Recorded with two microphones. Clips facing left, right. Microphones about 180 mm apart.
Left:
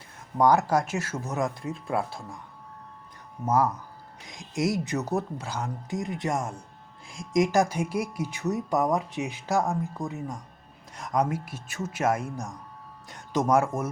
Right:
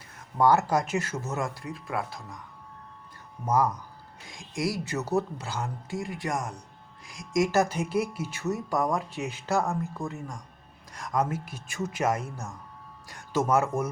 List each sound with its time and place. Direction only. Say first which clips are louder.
0.3 s speech: left 1 dB; 15° left (ahead or behind)
1.6 s speech: left 4 dB; 25° left (ahead or behind)
3.4 s speech: left 1 dB; 5° left (ahead or behind)
4.3 s speech: left 3 dB; 20° left (ahead or behind)